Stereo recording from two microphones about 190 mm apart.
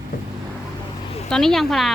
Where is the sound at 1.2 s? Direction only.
5° left (ahead or behind).